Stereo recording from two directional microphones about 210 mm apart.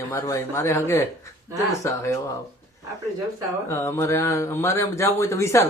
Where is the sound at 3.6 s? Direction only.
15° left (ahead or behind).